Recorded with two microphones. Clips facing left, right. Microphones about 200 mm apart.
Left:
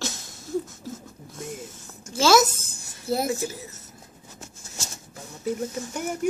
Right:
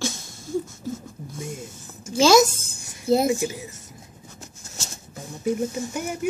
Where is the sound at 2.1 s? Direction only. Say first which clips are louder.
Right 3 dB; 15° right (ahead or behind).